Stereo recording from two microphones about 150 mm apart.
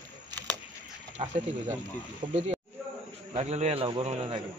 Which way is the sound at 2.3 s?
45° right (ahead or behind).